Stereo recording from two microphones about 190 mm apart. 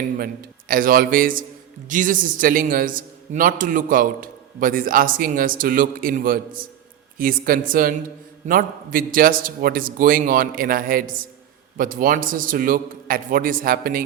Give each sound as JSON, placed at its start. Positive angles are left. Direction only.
{"t": 0.7, "sound": "a man's voice", "side_deg": -45}